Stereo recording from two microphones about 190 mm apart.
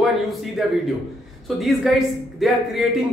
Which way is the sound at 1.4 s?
Centre (ahead or behind).